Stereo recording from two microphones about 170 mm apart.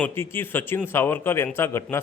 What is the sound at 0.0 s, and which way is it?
A man's voice, 15° left (ahead or behind).